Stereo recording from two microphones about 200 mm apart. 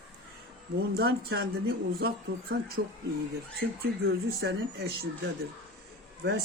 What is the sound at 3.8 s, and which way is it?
Speech, 50° right (ahead or behind).